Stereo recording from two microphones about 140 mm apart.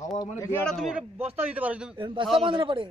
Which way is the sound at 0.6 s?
5° right (ahead or behind).